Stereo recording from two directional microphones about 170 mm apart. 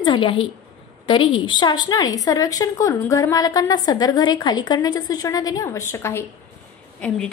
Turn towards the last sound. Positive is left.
turn(degrees=5)  # may be behind; listen again after turning